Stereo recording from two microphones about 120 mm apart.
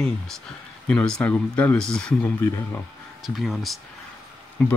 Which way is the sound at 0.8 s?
5° left (ahead or behind).